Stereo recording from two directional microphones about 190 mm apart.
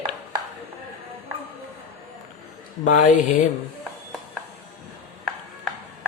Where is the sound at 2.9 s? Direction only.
40° left (ahead or behind).